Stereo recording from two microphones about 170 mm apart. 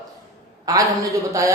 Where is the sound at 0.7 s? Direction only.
20° right (ahead or behind).